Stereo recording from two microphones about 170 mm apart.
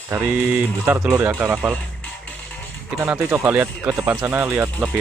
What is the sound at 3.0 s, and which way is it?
Speech, 15° right (ahead or behind).